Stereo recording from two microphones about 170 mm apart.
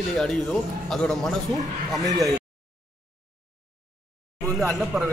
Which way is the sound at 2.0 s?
20° right (ahead or behind).